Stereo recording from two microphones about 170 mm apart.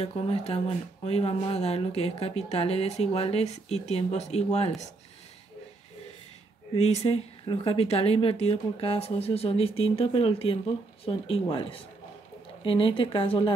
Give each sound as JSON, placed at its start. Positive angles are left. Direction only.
{"t": 0.0, "sound": "speech", "side_deg": 35}
{"t": 6.7, "sound": "speech", "side_deg": 40}